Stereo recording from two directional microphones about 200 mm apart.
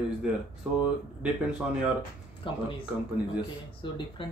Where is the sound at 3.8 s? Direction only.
25° left (ahead or behind).